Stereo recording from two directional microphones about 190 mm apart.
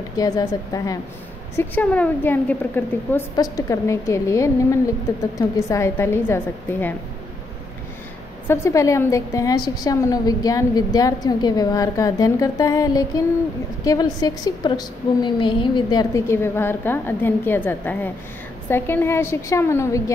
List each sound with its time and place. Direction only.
0.2 s a woman's voice: 20° left (ahead or behind)
1.6 s a woman's voice: 10° left (ahead or behind)
8.5 s a woman's voice: 15° left (ahead or behind)